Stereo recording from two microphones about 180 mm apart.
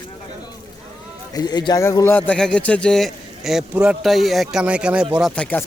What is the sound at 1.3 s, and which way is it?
A man's voice, 25° left (ahead or behind).